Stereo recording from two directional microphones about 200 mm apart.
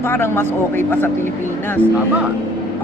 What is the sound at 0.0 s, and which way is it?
Speech, 10° left (ahead or behind).